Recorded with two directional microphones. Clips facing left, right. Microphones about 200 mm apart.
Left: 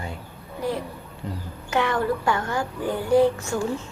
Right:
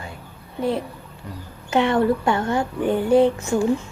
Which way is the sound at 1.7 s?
25° right (ahead or behind).